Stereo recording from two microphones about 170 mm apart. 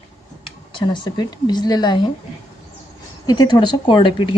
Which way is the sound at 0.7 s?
25° left (ahead or behind).